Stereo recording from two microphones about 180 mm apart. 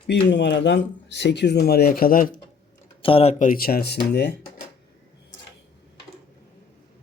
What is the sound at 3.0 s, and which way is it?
Speech, 30° left (ahead or behind).